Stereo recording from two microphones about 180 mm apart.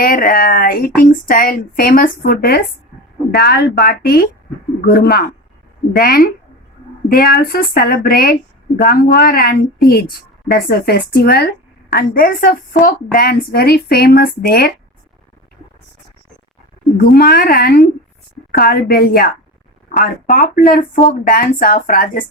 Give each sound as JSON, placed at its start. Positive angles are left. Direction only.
{"t": 0.0, "sound": "a woman's voice", "side_deg": 55}
{"t": 17.0, "sound": "a woman's voice", "side_deg": 60}